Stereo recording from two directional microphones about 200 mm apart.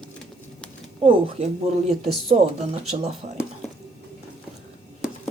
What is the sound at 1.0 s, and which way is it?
Speech, 35° right (ahead or behind).